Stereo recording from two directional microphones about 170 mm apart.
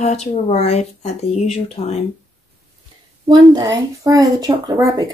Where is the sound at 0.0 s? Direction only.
40° left (ahead or behind).